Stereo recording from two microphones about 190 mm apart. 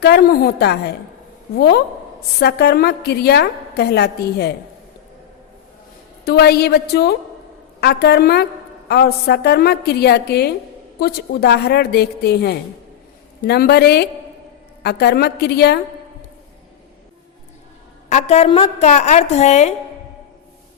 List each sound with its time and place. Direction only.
0.0 s a woman's voice: 55° left (ahead or behind)
6.2 s a woman's voice: 60° left (ahead or behind)
18.1 s a woman's voice: 35° left (ahead or behind)